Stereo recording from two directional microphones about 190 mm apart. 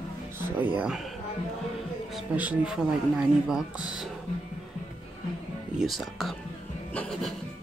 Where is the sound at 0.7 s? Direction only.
5° right (ahead or behind).